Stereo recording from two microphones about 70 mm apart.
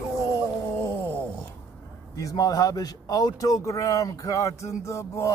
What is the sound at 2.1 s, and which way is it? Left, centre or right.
A man's voice, left.